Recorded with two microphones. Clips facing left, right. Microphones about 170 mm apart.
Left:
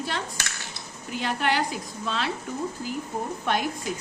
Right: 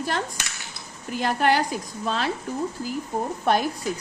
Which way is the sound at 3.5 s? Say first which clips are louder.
Right 5 dB; 40° right (ahead or behind).